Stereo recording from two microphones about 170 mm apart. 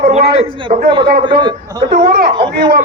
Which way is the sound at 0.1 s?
35° right (ahead or behind).